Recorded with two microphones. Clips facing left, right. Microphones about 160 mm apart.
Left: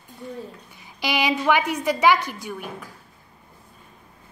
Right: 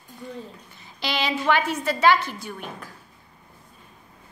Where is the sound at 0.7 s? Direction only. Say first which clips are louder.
Left 3 dB; 15° left (ahead or behind).